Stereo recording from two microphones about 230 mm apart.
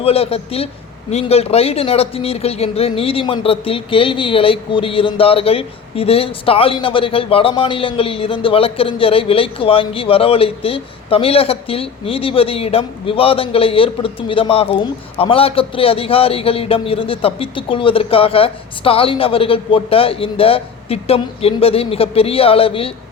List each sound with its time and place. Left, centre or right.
0.0 s speech: left